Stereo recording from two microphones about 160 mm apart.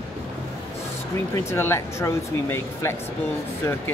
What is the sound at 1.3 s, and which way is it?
Speech, 15° left (ahead or behind).